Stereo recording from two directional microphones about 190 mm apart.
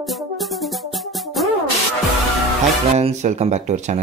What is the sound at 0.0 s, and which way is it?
Music, centre (ahead or behind).